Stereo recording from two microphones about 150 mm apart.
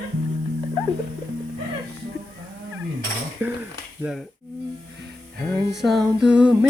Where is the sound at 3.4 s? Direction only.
10° right (ahead or behind).